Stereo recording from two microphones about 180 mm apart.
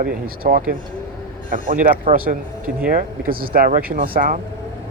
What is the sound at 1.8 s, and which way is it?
Speech, 50° right (ahead or behind).